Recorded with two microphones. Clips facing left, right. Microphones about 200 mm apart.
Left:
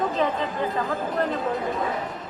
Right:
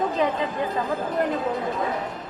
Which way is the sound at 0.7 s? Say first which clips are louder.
Right 2 dB; centre (ahead or behind).